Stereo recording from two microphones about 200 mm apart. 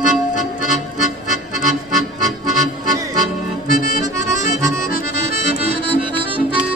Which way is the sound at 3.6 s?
45° left (ahead or behind).